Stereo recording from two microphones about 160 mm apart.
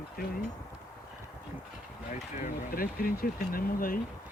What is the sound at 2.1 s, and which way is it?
Speech, 60° left (ahead or behind).